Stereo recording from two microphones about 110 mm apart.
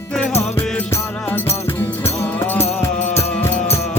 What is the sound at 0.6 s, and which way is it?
Music, 20° left (ahead or behind).